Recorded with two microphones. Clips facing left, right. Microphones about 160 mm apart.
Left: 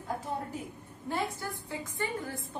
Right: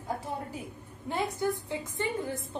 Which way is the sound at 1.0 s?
20° right (ahead or behind).